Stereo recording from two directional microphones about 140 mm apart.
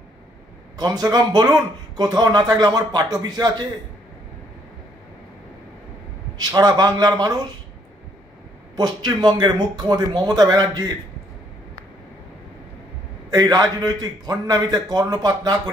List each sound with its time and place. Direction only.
0.7 s speech: 30° right (ahead or behind)
6.3 s speech: 30° right (ahead or behind)
8.7 s speech: 30° right (ahead or behind)
13.3 s speech: 25° right (ahead or behind)